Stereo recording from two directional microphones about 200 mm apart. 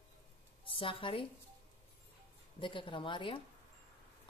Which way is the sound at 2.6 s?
25° left (ahead or behind).